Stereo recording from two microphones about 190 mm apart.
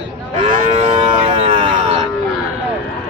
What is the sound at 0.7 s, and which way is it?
Moo, 35° right (ahead or behind).